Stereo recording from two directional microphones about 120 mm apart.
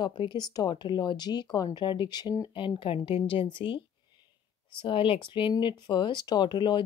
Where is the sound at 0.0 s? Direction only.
40° left (ahead or behind).